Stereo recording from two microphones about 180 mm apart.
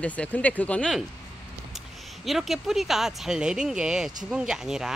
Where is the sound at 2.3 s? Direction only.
Centre (ahead or behind).